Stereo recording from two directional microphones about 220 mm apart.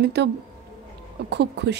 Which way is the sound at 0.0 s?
50° right (ahead or behind).